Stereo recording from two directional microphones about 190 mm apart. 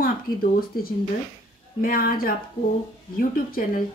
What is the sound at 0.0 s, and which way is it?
Speech, 50° left (ahead or behind).